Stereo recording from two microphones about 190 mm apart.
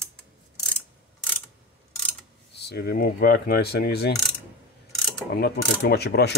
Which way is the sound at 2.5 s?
60° left (ahead or behind).